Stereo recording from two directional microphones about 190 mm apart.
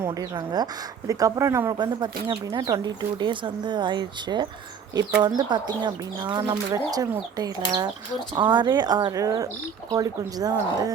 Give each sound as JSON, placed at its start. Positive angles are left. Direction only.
{"t": 0.0, "sound": "speech", "side_deg": -20}